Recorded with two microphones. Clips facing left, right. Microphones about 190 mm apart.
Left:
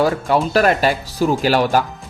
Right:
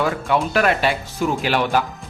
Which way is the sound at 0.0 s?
35° left (ahead or behind).